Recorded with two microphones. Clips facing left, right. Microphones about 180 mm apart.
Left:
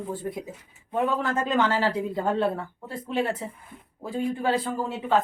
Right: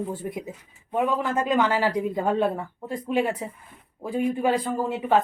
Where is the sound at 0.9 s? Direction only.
10° right (ahead or behind).